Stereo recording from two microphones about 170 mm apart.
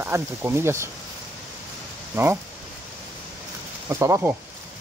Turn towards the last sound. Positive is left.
turn(degrees=-15)  # may be behind; listen again after turning